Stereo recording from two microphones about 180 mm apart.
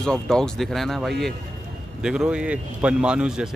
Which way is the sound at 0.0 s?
5° left (ahead or behind).